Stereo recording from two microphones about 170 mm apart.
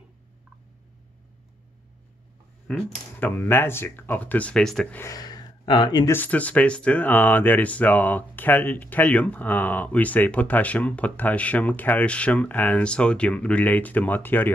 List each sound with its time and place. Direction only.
2.7 s speech: 10° left (ahead or behind)
5.0 s speech: 20° left (ahead or behind)
6.1 s speech: 10° left (ahead or behind)